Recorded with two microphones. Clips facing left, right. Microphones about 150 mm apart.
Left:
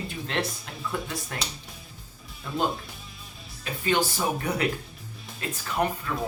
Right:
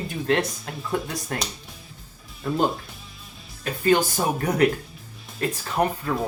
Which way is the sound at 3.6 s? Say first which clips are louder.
Right 5 dB; 45° right (ahead or behind).